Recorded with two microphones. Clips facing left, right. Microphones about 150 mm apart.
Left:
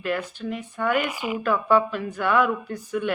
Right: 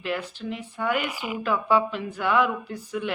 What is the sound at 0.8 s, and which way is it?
Speech, 10° right (ahead or behind).